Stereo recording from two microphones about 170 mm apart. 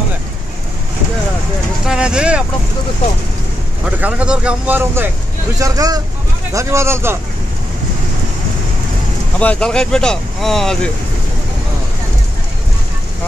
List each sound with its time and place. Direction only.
1.9 s a sound: 5° right (ahead or behind)
3.8 s speech: 5° right (ahead or behind)
9.4 s speech: 5° left (ahead or behind)